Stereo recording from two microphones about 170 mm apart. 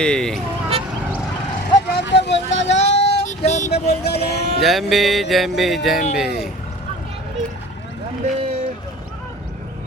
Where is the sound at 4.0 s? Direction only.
75° left (ahead or behind).